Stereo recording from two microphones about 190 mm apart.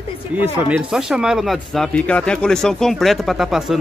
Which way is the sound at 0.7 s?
5° right (ahead or behind).